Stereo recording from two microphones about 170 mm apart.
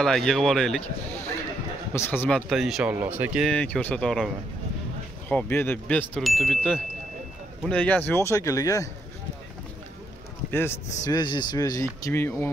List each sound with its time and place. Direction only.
0.0 s speech: 5° left (ahead or behind)
2.0 s speech: 10° left (ahead or behind); by 3.4 s 10° right (ahead or behind)
3.4 s speech: 5° left (ahead or behind)
5.3 s speech: 10° left (ahead or behind)
10.5 s speech: 15° left (ahead or behind)
11.1 s speech: 25° left (ahead or behind)